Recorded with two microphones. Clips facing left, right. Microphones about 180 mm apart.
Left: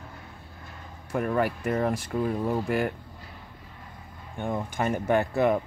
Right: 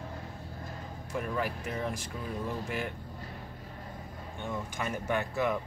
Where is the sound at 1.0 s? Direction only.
55° left (ahead or behind).